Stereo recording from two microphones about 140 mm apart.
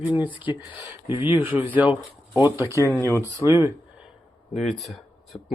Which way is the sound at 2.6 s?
20° right (ahead or behind).